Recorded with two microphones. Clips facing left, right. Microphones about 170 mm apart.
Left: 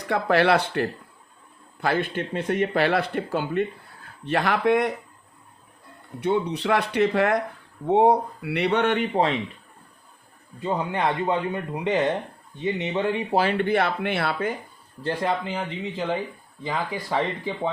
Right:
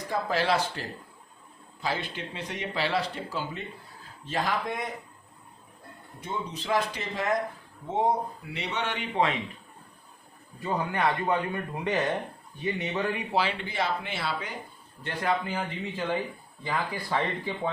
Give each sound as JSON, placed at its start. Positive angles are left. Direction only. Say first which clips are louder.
{"t": 0.1, "sound": "speech", "louder": "left 7 dB", "side_deg": 65}
{"t": 6.1, "sound": "speech", "louder": "left 11 dB", "side_deg": 70}
{"t": 10.6, "sound": "speech", "louder": "left 3 dB", "side_deg": 20}
{"t": 13.3, "sound": "speech", "louder": "left 10 dB", "side_deg": 50}
{"t": 15.0, "sound": "speech", "louder": "left 4 dB", "side_deg": 30}